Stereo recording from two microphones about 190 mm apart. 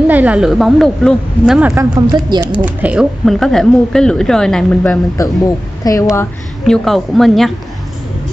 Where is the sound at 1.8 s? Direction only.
20° right (ahead or behind).